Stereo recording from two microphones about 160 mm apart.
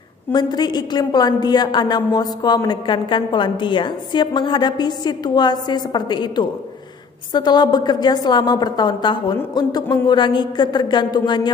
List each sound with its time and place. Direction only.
0.3 s a woman's voice: 25° left (ahead or behind)